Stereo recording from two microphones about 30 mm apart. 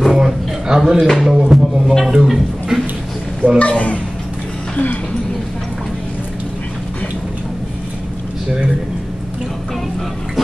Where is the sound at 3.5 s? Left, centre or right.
Left.